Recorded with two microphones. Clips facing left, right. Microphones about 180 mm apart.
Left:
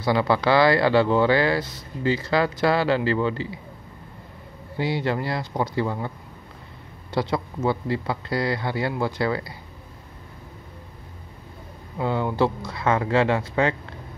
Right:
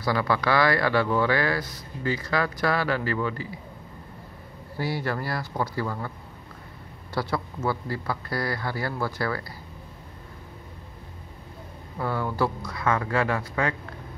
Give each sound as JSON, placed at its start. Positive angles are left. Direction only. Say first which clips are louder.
{"t": 0.0, "sound": "speech", "louder": "left 4 dB", "side_deg": 25}
{"t": 4.7, "sound": "speech", "louder": "left 4 dB", "side_deg": 20}
{"t": 7.2, "sound": "speech", "louder": "left 4 dB", "side_deg": 20}
{"t": 12.0, "sound": "speech", "louder": "left 4 dB", "side_deg": 20}